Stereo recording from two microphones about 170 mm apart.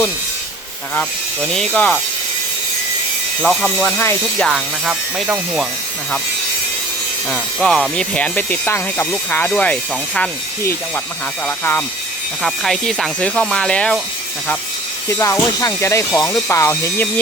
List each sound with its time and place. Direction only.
1.5 s speech: 5° left (ahead or behind)
3.4 s speech: centre (ahead or behind)
3.8 s speech: 15° left (ahead or behind)
4.4 s speech: centre (ahead or behind)
7.3 s speech: 5° left (ahead or behind)
15.1 s speech: 15° left (ahead or behind)